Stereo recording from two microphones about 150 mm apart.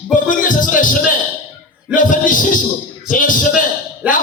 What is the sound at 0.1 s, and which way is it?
A man's voice, 60° left (ahead or behind).